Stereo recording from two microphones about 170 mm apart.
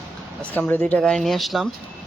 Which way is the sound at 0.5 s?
10° left (ahead or behind).